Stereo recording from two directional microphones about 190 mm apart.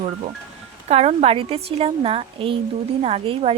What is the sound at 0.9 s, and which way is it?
Speech, 35° right (ahead or behind).